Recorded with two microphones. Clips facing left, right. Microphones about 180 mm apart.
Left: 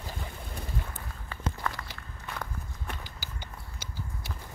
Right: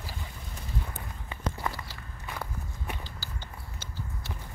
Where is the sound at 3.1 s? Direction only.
15° left (ahead or behind).